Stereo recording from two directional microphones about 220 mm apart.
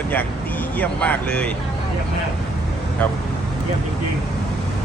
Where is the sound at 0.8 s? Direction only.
5° left (ahead or behind).